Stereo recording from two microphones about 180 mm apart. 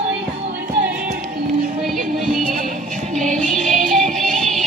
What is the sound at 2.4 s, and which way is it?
Music, 50° right (ahead or behind).